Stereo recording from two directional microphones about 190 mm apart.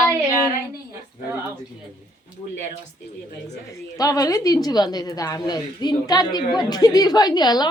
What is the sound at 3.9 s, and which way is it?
A woman's voice, 20° left (ahead or behind).